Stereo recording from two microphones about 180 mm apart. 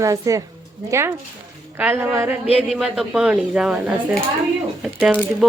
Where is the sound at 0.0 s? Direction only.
20° right (ahead or behind).